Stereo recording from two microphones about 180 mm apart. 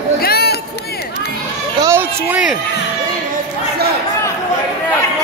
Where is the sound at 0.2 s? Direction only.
60° left (ahead or behind).